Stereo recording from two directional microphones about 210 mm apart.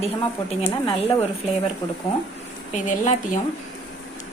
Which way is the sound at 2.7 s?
35° left (ahead or behind).